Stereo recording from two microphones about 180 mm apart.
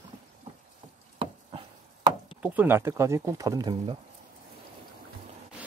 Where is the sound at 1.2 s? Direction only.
30° right (ahead or behind).